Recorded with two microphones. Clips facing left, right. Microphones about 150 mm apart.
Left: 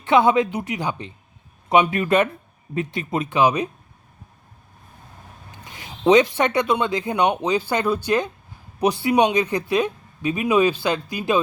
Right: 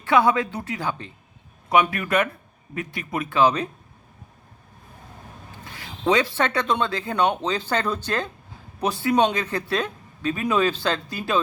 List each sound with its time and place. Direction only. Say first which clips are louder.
0.0 s speech: left 3 dB; 20° left (ahead or behind)
5.6 s speech: left 5 dB; 20° left (ahead or behind)